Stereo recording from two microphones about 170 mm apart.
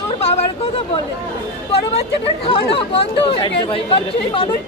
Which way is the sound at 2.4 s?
35° left (ahead or behind).